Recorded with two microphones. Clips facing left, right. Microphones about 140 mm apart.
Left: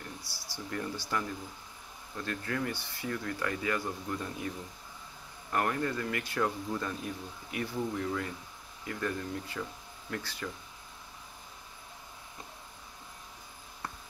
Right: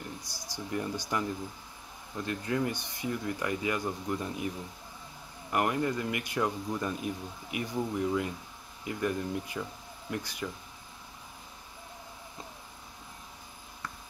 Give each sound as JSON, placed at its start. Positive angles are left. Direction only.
{"t": 0.2, "sound": "speech", "side_deg": -15}
{"t": 5.5, "sound": "speech", "side_deg": -15}